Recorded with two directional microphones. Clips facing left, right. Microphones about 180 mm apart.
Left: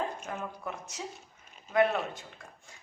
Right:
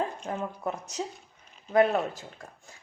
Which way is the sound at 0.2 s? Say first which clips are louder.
Right 5 dB; 30° right (ahead or behind).